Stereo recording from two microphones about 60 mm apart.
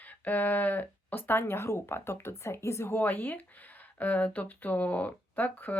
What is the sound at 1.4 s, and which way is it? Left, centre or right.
Speech, left.